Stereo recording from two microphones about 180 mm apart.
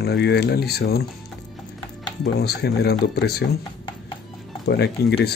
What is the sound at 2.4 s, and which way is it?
Speech, 60° left (ahead or behind).